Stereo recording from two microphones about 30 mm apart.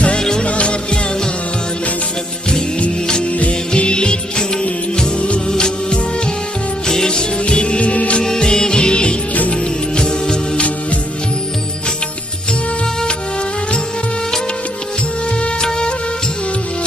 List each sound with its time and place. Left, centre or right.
0.2 s music: left
0.4 s music: left
3.8 s music: left
7.1 s music: left
8.2 s music: left
15.6 s music: left